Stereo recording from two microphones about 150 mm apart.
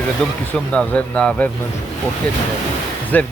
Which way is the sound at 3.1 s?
10° left (ahead or behind).